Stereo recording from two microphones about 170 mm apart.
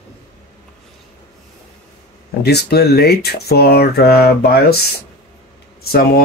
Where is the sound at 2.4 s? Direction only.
75° left (ahead or behind).